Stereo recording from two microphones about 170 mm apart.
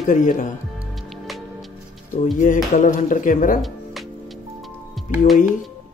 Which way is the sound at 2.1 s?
50° left (ahead or behind).